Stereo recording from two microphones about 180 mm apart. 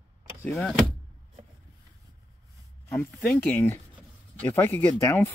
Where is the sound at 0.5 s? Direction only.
Centre (ahead or behind).